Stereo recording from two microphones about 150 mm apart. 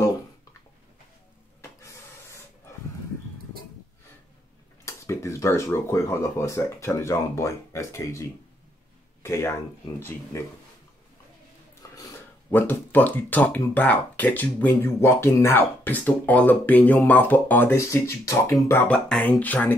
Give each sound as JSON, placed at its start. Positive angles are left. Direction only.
{"t": 4.8, "sound": "speech", "side_deg": 20}
{"t": 12.0, "sound": "speech", "side_deg": 15}